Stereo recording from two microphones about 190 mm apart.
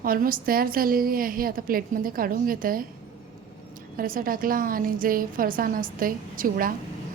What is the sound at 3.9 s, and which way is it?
Speech, 50° right (ahead or behind).